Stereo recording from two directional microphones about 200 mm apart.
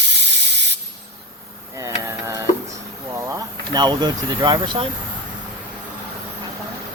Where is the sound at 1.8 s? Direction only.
15° right (ahead or behind).